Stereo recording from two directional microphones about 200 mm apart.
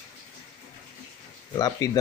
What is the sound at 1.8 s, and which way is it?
Speech, 20° left (ahead or behind).